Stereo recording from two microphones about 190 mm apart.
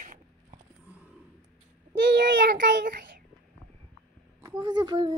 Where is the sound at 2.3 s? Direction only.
50° right (ahead or behind).